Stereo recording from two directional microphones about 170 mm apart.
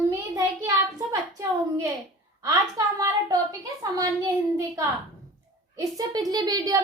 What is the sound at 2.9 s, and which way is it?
Speech, 20° right (ahead or behind).